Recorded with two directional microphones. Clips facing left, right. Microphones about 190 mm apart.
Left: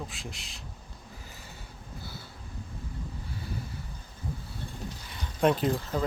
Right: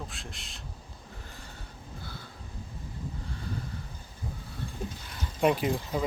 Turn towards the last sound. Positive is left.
turn(degrees=-10)  # may be behind; listen again after turning